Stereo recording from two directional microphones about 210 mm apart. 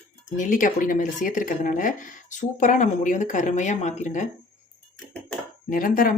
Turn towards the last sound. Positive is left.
turn(degrees=40)  # may be behind; listen again after turning